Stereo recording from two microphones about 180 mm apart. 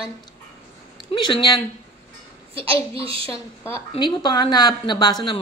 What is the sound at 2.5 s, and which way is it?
Speech, 30° right (ahead or behind).